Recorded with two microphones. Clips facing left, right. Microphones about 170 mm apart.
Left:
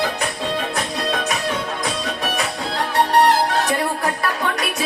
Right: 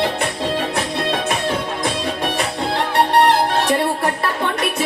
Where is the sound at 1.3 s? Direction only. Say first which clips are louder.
Right 2 dB; 30° right (ahead or behind).